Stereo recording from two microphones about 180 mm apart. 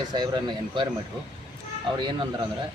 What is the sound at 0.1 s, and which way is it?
Speech, 25° right (ahead or behind).